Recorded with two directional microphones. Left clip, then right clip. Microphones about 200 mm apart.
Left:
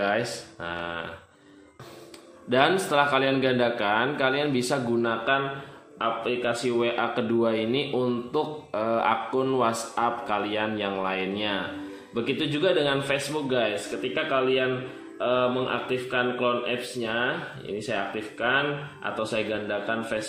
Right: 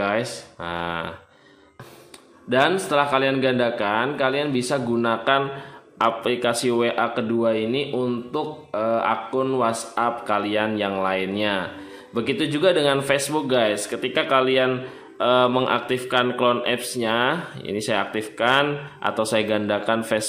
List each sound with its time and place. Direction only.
0.0 s a man's voice: 20° right (ahead or behind)
2.5 s a man's voice: 10° right (ahead or behind)
5.9 s a man's voice: 30° right (ahead or behind)
7.0 s a man's voice: 10° right (ahead or behind); by 20.2 s 35° right (ahead or behind)